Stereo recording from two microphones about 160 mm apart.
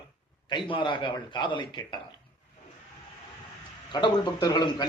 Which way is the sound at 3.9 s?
30° left (ahead or behind).